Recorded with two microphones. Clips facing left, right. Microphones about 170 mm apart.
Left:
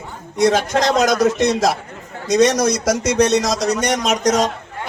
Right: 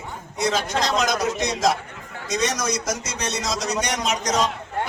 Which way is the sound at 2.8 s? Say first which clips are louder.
Left 12 dB; 75° left (ahead or behind).